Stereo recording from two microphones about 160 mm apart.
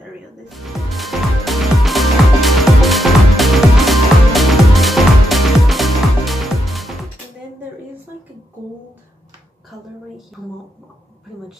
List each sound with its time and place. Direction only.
0.5 s music: centre (ahead or behind)